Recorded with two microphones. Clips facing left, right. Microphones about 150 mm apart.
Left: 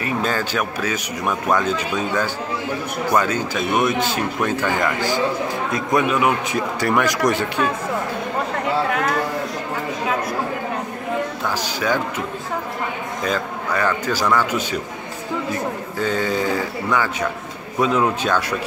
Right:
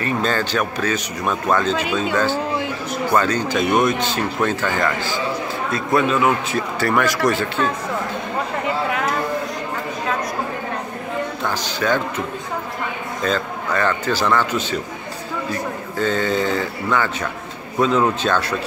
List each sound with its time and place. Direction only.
0.0 s speech: 10° left (ahead or behind)
3.2 s speech: 5° left (ahead or behind)
11.4 s speech: 10° left (ahead or behind)
13.2 s speech: 10° left (ahead or behind)
16.0 s speech: 10° left (ahead or behind)